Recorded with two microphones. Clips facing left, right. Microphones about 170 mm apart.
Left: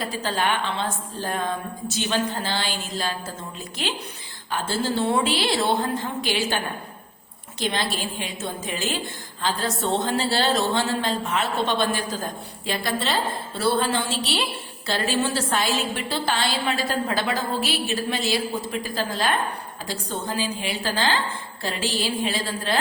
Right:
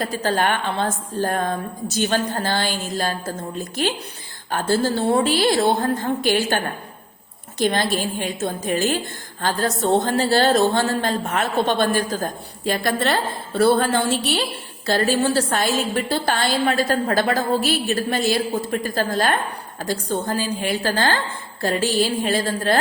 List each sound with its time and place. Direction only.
0.0 s a woman's voice: 45° right (ahead or behind)
7.6 s a woman's voice: 45° right (ahead or behind)